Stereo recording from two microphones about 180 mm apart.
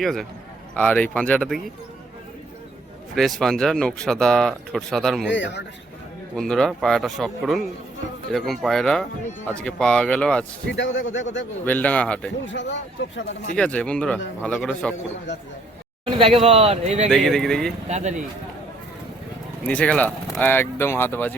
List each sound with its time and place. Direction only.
0.0 s speech: centre (ahead or behind)
3.2 s speech: centre (ahead or behind)
5.3 s speech: 80° left
6.5 s speech: 5° left (ahead or behind)
10.7 s speech: 85° left
11.6 s speech: 10° left (ahead or behind)
12.5 s speech: 85° left
13.6 s speech: 5° left (ahead or behind)
16.1 s speech: 30° right (ahead or behind)
17.1 s speech: centre (ahead or behind)
17.8 s speech: 40° right (ahead or behind)
19.6 s speech: 5° left (ahead or behind)